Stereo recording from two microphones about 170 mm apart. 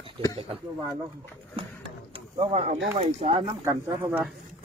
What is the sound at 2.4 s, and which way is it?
Speech, 40° right (ahead or behind).